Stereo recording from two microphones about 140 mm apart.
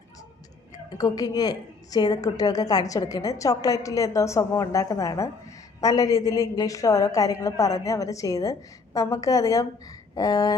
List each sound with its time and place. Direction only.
0.9 s a woman's voice: 25° left (ahead or behind)